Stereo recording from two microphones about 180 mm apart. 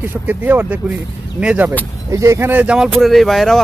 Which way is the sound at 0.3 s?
10° right (ahead or behind).